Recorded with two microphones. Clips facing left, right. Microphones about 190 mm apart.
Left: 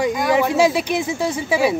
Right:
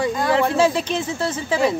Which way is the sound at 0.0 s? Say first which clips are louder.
Left 1 dB; 10° left (ahead or behind).